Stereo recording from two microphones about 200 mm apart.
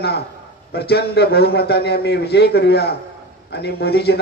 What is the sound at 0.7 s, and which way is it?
A man's voice, 55° left (ahead or behind).